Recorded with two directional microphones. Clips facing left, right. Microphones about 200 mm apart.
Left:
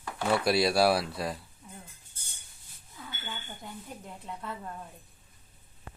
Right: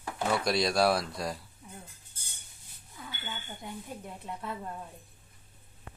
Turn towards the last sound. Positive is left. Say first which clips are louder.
# right 1 dB
turn(degrees=-10)  # may be behind; listen again after turning